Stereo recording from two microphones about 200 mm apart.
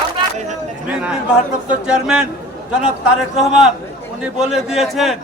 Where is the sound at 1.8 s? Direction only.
5° right (ahead or behind).